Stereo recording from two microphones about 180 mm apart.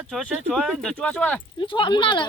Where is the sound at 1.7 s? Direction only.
25° left (ahead or behind).